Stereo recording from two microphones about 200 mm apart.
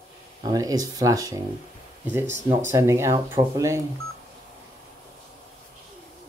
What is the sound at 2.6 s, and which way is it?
Speech, 15° right (ahead or behind).